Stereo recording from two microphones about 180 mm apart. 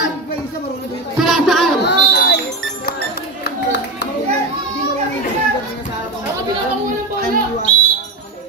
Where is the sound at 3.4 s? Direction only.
70° left (ahead or behind).